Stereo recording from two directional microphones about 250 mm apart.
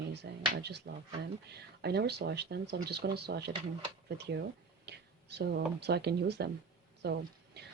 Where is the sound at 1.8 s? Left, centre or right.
Right.